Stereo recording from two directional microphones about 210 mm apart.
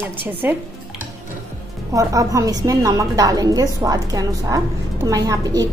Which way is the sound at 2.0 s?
15° right (ahead or behind).